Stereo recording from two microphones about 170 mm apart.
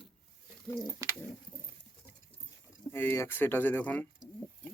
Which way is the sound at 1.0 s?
15° right (ahead or behind).